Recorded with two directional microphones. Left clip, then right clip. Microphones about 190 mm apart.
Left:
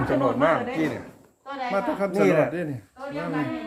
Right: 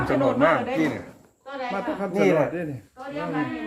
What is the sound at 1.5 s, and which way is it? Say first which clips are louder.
Speech: left 2 dB; 55° left (ahead or behind).